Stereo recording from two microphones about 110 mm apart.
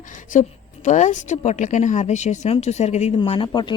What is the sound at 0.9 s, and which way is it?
Speech, 90° left.